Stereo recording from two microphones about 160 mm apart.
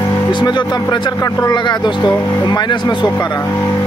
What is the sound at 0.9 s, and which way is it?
Speech, 25° left (ahead or behind).